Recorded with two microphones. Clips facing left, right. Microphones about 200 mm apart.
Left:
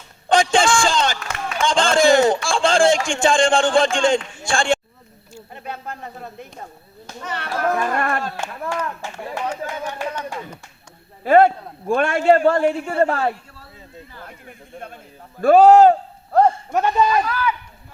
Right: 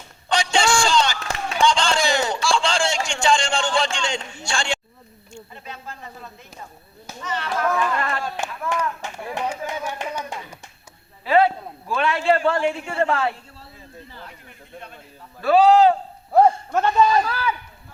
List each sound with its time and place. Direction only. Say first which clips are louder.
0.3 s a sound: left 4 dB; 50° left (ahead or behind)
1.6 s a man's voice: left 5 dB; 50° left (ahead or behind)
8.5 s speech: even; 40° left (ahead or behind)
9.0 s speech: even; 15° right (ahead or behind)
11.2 s a man's voice: left 4 dB; 50° left (ahead or behind)
15.4 s a man's voice: left 4 dB; 50° left (ahead or behind)
16.7 s speech: left 1 dB; 15° left (ahead or behind)
17.2 s speech: left 3 dB; 30° right (ahead or behind)